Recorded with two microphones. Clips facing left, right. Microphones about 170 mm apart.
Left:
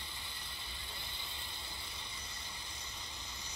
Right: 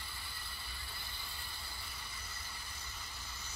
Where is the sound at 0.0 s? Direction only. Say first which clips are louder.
Even; 20° left (ahead or behind).